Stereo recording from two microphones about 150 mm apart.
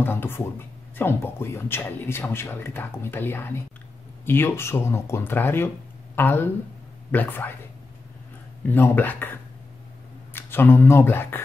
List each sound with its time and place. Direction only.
0.0 s speech: 15° left (ahead or behind)
8.6 s speech: 15° left (ahead or behind)